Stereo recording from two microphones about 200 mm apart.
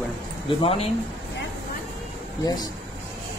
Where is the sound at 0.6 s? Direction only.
30° left (ahead or behind).